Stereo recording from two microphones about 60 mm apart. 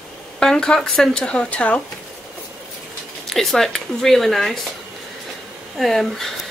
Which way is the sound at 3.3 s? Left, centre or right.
Centre.